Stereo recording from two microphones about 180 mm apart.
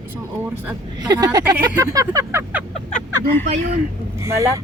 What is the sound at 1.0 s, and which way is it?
Speech, 20° right (ahead or behind).